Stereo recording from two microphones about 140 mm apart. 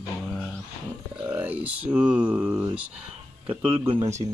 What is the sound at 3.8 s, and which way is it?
Speech, 15° right (ahead or behind).